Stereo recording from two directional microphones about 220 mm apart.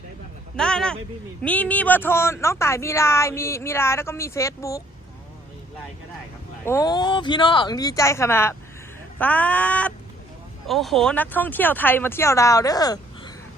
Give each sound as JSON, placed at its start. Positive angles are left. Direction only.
{"t": 0.5, "sound": "a man's voice", "side_deg": 5}
{"t": 6.7, "sound": "speech", "side_deg": 15}